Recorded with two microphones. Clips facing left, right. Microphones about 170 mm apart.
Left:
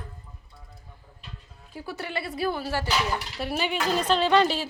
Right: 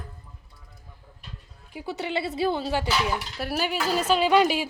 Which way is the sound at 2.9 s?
5° right (ahead or behind).